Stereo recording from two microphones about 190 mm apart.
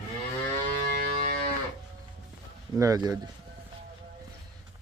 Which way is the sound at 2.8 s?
20° right (ahead or behind).